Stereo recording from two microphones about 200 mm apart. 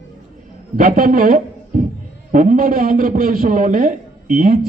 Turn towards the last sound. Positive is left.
turn(degrees=-45)  # may be behind; listen again after turning